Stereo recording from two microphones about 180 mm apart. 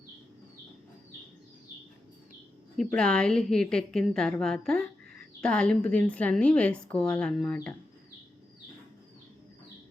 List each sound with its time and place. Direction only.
2.7 s a woman's voice: 5° left (ahead or behind)